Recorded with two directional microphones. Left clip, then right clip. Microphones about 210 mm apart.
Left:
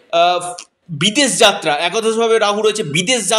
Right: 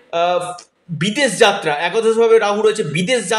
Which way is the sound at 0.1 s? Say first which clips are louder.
Left 3 dB; 35° left (ahead or behind).